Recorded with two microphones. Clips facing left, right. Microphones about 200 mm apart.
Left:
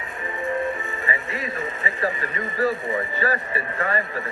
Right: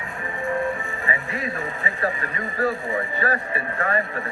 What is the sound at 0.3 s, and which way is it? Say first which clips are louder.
Speech: right 1 dB; 20° left (ahead or behind).